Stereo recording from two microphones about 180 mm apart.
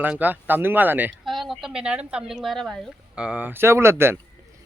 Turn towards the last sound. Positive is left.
turn(degrees=-15)  # may be behind; listen again after turning